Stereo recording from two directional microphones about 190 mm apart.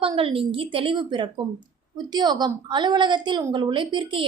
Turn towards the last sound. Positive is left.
turn(degrees=-25)  # may be behind; listen again after turning